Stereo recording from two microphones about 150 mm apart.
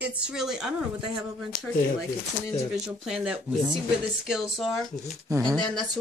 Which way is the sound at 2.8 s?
5° right (ahead or behind).